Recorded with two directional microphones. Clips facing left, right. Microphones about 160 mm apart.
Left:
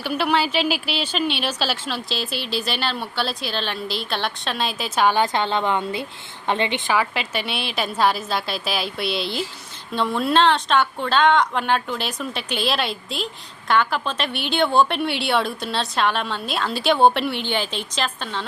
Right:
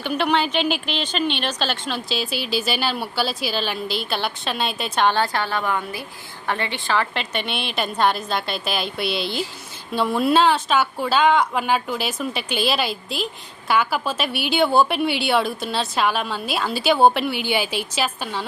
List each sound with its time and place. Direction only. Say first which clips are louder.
0.0 s speech: even; 5° left (ahead or behind)
5.2 s a woman's voice: left 2 dB; 20° left (ahead or behind)
7.0 s speech: even; 5° left (ahead or behind)